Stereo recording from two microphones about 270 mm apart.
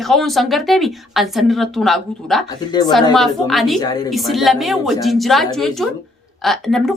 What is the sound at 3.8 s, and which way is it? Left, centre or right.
Speech, centre.